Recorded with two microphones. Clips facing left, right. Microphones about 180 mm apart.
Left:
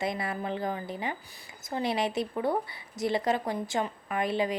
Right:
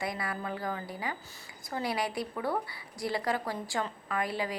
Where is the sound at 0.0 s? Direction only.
25° left (ahead or behind).